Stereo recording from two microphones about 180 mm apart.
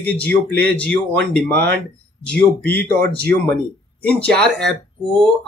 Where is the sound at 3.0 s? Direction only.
60° right (ahead or behind).